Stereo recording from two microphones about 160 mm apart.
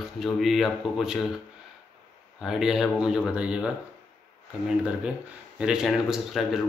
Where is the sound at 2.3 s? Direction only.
5° right (ahead or behind).